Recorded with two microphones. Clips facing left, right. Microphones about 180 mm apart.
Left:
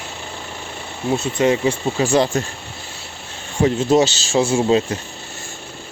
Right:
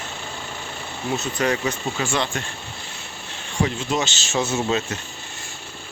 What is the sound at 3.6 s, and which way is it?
Speech, 35° left (ahead or behind).